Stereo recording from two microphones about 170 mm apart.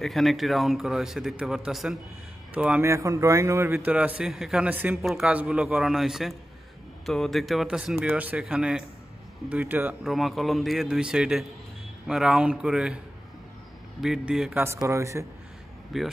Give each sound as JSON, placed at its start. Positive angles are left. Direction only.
{"t": 0.0, "sound": "a man's voice", "side_deg": 0}
{"t": 2.9, "sound": "a man's voice", "side_deg": -15}
{"t": 3.9, "sound": "a man's voice", "side_deg": -5}
{"t": 10.0, "sound": "a man's voice", "side_deg": 0}
{"t": 14.0, "sound": "a man's voice", "side_deg": -5}
{"t": 15.9, "sound": "a man's voice", "side_deg": 0}